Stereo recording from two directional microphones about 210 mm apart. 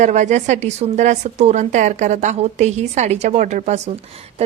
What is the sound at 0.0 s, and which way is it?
A woman's voice, 35° right (ahead or behind).